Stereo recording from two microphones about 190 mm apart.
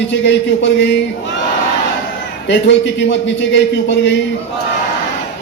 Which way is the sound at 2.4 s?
70° left (ahead or behind).